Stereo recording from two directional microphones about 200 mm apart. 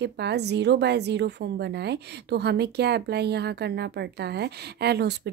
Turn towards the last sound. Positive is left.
turn(degrees=-55)  # may be behind; listen again after turning